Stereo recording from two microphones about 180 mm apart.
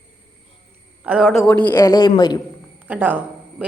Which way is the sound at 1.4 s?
10° left (ahead or behind).